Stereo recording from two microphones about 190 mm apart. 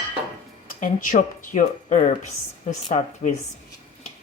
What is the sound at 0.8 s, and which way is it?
A woman's voice, 45° left (ahead or behind).